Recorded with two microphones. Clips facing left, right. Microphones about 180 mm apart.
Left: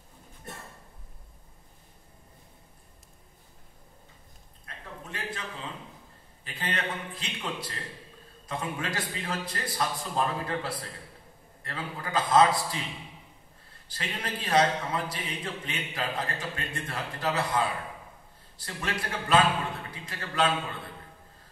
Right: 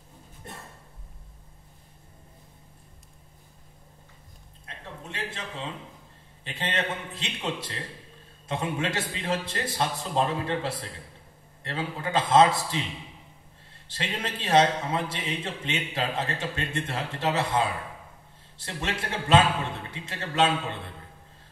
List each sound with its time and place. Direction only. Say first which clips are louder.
4.6 s a sound: right 2 dB; 25° right (ahead or behind)
6.4 s a man's voice: right 3 dB; 25° right (ahead or behind)
13.8 s a man's voice: right 3 dB; 25° right (ahead or behind)